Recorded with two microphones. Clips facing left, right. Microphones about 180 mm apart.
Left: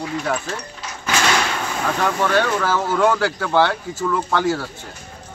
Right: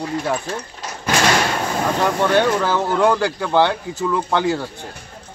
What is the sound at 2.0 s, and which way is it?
Speech, 15° right (ahead or behind).